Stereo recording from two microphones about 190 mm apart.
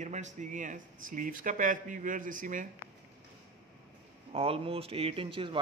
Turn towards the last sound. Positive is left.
turn(degrees=-25)  # may be behind; listen again after turning